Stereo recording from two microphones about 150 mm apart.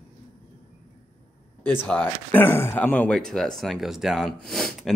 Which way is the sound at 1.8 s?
10° left (ahead or behind).